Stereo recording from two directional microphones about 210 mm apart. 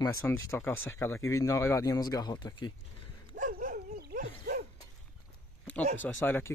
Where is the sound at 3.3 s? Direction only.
40° right (ahead or behind).